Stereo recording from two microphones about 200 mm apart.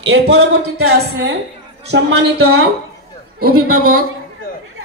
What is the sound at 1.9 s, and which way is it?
Speech, 90° right.